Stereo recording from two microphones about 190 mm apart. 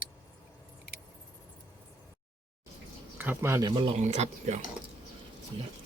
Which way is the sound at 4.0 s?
35° right (ahead or behind).